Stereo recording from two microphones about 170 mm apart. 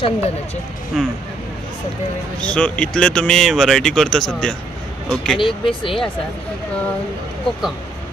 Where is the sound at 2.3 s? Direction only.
5° left (ahead or behind).